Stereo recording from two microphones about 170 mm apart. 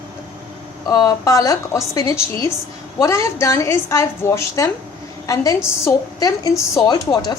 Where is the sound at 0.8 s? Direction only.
20° left (ahead or behind).